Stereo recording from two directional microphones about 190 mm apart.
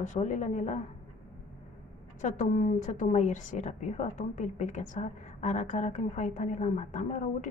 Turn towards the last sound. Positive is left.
turn(degrees=40)  # may be behind; listen again after turning